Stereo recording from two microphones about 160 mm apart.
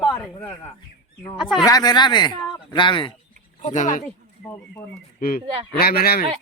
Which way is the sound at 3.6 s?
50° left (ahead or behind).